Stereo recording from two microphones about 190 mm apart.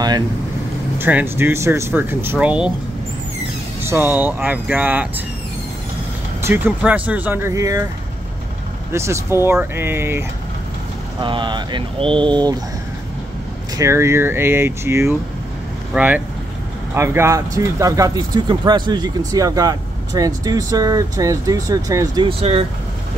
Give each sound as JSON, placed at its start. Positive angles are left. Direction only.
{"t": 0.9, "sound": "speech", "side_deg": -10}
{"t": 3.8, "sound": "speech", "side_deg": -10}
{"t": 6.4, "sound": "speech", "side_deg": -10}
{"t": 8.9, "sound": "speech", "side_deg": -15}
{"t": 11.1, "sound": "speech", "side_deg": -25}
{"t": 13.7, "sound": "speech", "side_deg": -15}